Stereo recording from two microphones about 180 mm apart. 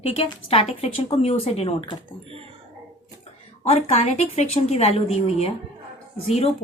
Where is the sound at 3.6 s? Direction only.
35° left (ahead or behind).